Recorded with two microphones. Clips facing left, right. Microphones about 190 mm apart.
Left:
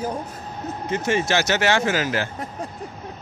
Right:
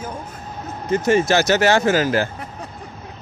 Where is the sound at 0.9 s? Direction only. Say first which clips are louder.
Right 6 dB; 40° right (ahead or behind).